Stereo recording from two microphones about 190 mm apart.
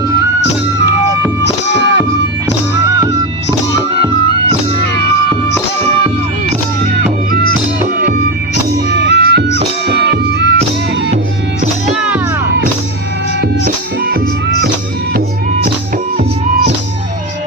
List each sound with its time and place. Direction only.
1.5 s music: 65° left (ahead or behind)
9.0 s music: 60° right (ahead or behind)
16.1 s music: 45° right (ahead or behind)